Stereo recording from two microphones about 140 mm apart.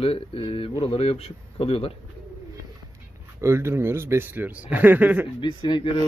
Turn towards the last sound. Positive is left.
turn(degrees=35)  # may be behind; listen again after turning